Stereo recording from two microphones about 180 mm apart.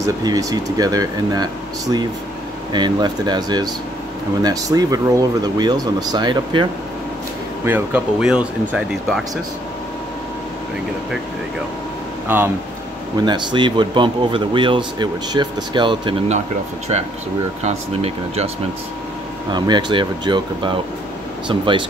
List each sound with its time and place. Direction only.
0.0 s speech: 20° right (ahead or behind)
7.6 s speech: 10° right (ahead or behind)
12.3 s speech: 10° right (ahead or behind)
13.2 s speech: 25° right (ahead or behind)
16.9 s speech: 35° right (ahead or behind)
19.5 s speech: 25° right (ahead or behind)